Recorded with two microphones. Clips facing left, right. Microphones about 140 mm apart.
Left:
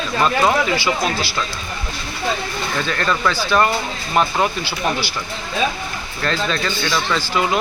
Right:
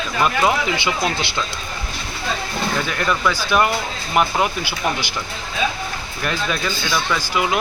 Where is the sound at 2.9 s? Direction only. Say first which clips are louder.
Left 3 dB; 10° right (ahead or behind).